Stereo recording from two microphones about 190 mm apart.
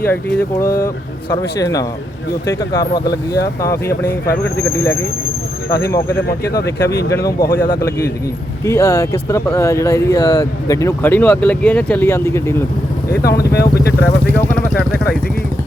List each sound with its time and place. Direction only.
0.0 s speech: 10° left (ahead or behind)
6.5 s speech: 15° left (ahead or behind)
13.7 s speech: 15° left (ahead or behind)